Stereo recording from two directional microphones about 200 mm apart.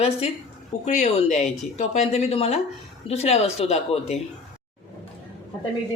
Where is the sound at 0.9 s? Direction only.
35° left (ahead or behind).